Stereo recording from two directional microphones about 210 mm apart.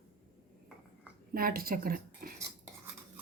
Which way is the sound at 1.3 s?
45° right (ahead or behind).